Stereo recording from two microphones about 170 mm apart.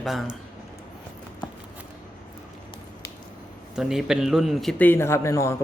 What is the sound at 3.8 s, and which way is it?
Speech, 5° right (ahead or behind).